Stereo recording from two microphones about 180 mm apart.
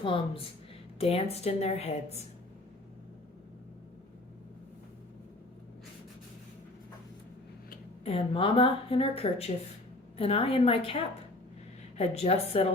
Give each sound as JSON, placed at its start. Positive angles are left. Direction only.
{"t": 0.0, "sound": "a woman's voice", "side_deg": 30}
{"t": 8.0, "sound": "speech", "side_deg": 30}